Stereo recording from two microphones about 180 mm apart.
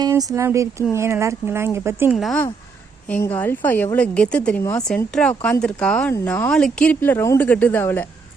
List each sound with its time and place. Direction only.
0.0 s speech: 20° right (ahead or behind)
2.1 s speech: centre (ahead or behind)